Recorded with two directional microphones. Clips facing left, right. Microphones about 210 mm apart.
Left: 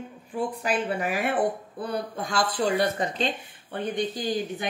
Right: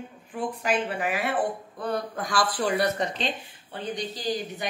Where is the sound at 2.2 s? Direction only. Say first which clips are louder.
Left 3 dB; 25° left (ahead or behind).